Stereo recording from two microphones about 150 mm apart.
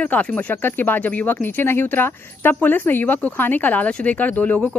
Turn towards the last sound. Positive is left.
turn(degrees=10)  # may be behind; listen again after turning